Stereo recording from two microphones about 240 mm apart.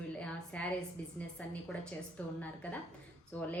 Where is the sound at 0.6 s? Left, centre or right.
Centre.